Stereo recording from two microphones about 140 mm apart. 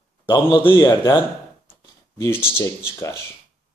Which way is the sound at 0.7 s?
25° left (ahead or behind).